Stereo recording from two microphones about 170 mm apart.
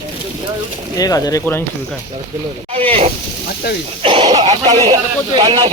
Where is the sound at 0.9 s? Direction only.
20° left (ahead or behind).